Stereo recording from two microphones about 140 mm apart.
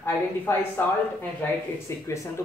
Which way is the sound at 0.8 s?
15° left (ahead or behind).